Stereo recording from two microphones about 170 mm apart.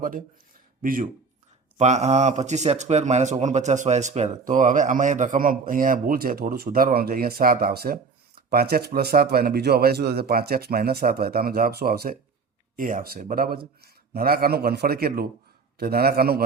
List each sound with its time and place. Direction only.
0.8 s speech: 55° right (ahead or behind)
1.8 s speech: 40° right (ahead or behind); by 12.1 s 65° right (ahead or behind)
12.7 s speech: 55° right (ahead or behind)